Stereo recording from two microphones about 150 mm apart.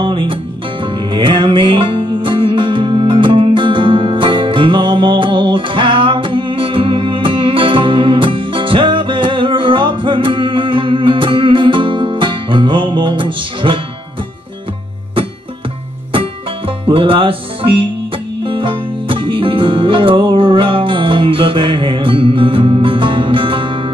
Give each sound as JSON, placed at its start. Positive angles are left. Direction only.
{"t": 0.0, "sound": "music", "side_deg": -35}
{"t": 16.1, "sound": "music", "side_deg": -35}